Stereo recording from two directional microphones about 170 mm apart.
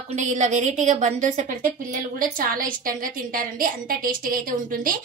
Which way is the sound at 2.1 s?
55° right (ahead or behind).